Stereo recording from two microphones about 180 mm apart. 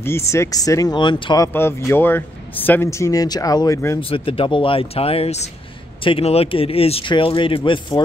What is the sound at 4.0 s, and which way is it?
Speech, 30° left (ahead or behind).